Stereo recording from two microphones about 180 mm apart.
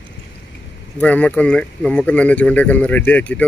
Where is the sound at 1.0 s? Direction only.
5° left (ahead or behind).